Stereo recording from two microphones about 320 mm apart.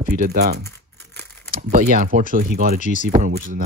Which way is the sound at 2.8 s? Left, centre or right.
Left.